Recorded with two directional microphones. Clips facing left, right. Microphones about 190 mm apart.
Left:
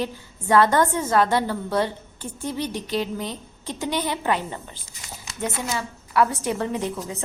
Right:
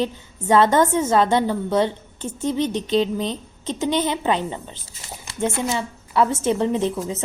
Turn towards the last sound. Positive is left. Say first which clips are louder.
# right 5 dB
turn(degrees=-25)  # may be behind; listen again after turning